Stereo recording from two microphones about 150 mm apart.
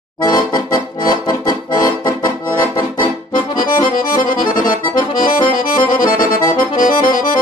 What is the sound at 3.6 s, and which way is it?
Accordion, 70° left (ahead or behind).